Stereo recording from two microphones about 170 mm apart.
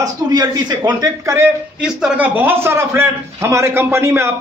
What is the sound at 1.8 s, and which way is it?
A man's voice, 5° right (ahead or behind).